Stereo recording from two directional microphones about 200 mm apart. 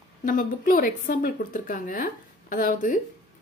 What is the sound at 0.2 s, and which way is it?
A woman's voice, 45° left (ahead or behind).